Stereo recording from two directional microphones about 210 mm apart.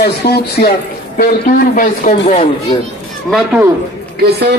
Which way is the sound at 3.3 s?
Centre (ahead or behind).